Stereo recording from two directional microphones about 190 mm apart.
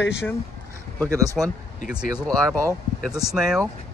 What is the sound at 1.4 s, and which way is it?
Speech, centre (ahead or behind).